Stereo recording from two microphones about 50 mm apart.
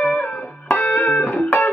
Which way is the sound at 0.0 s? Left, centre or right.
Centre.